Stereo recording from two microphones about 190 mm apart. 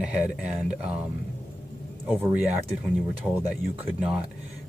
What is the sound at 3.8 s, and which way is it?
Speech, 5° right (ahead or behind).